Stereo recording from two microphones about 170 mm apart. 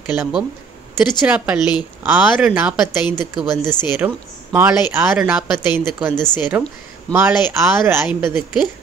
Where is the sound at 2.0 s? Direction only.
10° right (ahead or behind).